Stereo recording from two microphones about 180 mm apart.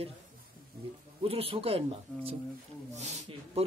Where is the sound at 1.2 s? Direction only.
30° right (ahead or behind).